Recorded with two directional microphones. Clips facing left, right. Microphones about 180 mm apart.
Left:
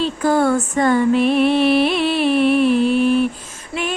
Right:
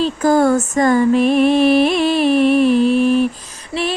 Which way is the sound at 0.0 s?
40° right (ahead or behind).